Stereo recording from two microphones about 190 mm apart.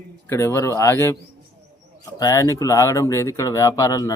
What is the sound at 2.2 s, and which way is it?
A man's voice, 15° left (ahead or behind).